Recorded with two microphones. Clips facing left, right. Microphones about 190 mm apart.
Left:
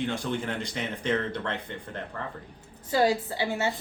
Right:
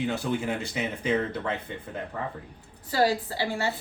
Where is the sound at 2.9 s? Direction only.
20° left (ahead or behind).